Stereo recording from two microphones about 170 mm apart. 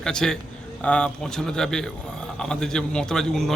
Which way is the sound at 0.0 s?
5° left (ahead or behind).